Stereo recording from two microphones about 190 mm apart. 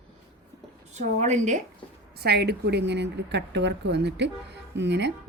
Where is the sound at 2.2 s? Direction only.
60° right (ahead or behind).